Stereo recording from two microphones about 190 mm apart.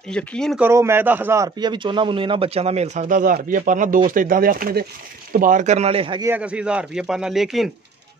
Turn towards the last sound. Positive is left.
turn(degrees=0)  # may be behind; listen again after turning